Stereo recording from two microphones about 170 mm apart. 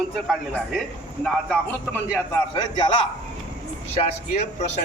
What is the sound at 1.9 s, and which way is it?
Speech, 10° left (ahead or behind).